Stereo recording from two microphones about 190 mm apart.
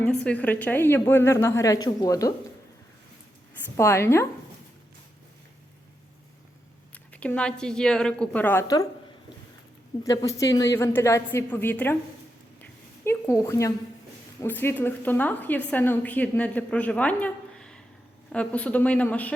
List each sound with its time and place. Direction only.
0.0 s a woman's voice: 5° left (ahead or behind)
3.8 s a woman's voice: 15° left (ahead or behind)
6.9 s a woman's voice: 10° left (ahead or behind)
10.0 s a woman's voice: 15° left (ahead or behind)
13.1 s a woman's voice: 15° left (ahead or behind)